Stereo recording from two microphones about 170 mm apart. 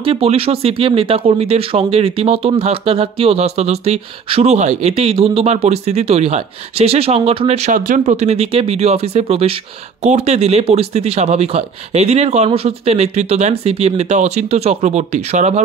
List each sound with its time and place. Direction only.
0.0 s speech: 35° right (ahead or behind)
7.7 s speech: 50° right (ahead or behind)